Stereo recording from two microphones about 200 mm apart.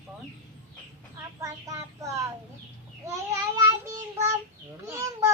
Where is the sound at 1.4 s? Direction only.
15° right (ahead or behind).